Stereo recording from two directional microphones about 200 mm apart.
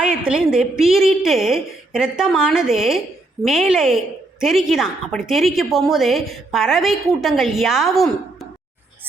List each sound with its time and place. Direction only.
0.3 s a woman's voice: 5° right (ahead or behind)